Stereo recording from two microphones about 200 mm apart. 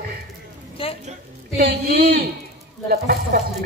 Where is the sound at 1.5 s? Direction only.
50° right (ahead or behind).